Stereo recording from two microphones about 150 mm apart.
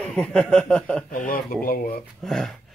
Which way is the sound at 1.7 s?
80° left.